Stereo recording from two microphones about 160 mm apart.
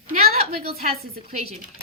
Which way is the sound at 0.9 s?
75° right (ahead or behind).